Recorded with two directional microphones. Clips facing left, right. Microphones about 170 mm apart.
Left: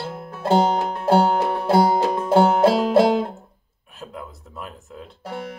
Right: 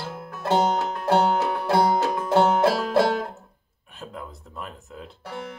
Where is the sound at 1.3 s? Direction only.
25° left (ahead or behind).